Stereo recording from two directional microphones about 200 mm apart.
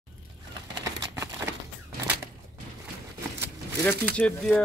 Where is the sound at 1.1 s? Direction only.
10° right (ahead or behind).